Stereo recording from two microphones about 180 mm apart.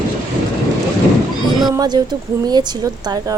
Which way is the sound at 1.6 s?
20° right (ahead or behind).